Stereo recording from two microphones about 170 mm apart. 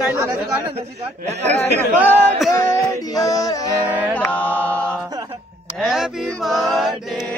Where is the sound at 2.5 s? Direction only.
20° left (ahead or behind).